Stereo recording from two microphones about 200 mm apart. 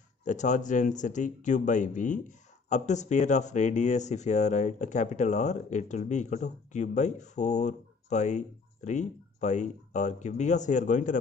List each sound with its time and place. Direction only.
0.2 s speech: 35° left (ahead or behind)